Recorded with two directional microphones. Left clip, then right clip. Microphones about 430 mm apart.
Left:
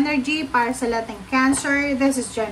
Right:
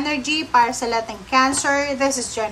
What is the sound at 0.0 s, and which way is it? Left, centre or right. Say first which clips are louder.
A woman's voice: even; centre.